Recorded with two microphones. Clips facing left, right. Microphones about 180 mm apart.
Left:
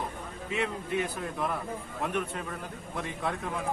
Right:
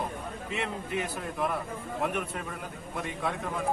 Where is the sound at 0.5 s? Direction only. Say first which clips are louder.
Left 3 dB; centre (ahead or behind).